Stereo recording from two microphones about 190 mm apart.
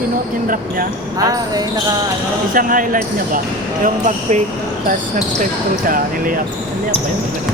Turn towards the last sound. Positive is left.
turn(degrees=-45)  # may be behind; listen again after turning